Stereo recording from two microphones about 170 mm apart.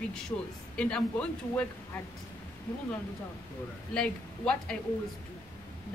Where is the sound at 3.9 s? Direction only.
5° left (ahead or behind).